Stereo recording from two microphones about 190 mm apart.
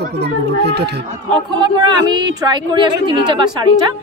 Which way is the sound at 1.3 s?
25° right (ahead or behind).